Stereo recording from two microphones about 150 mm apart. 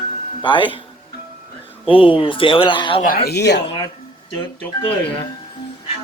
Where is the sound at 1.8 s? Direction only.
35° left (ahead or behind).